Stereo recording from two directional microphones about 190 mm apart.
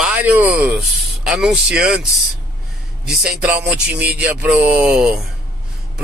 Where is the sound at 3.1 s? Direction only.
5° right (ahead or behind).